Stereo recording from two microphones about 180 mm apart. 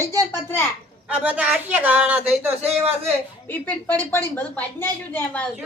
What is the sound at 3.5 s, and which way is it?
A woman's voice, 10° left (ahead or behind).